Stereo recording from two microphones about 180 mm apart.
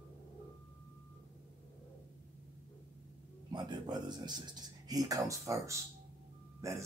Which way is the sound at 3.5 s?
25° right (ahead or behind).